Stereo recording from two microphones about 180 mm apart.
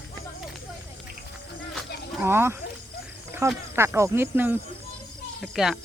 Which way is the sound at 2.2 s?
15° right (ahead or behind).